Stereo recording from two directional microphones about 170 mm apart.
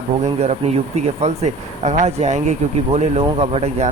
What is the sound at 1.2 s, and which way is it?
Speech, 40° right (ahead or behind).